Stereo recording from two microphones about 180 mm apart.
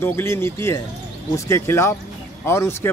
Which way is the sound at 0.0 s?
15° left (ahead or behind).